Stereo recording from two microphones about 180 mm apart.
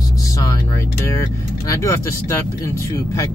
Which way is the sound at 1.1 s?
20° left (ahead or behind).